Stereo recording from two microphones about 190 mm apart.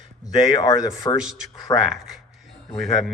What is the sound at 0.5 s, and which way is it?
Speech, 20° left (ahead or behind).